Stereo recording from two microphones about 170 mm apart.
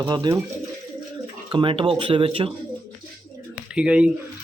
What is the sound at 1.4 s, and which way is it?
Speech, 30° right (ahead or behind).